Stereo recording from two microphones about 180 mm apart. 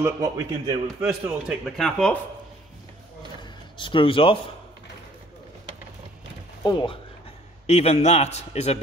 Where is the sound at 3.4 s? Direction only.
25° left (ahead or behind).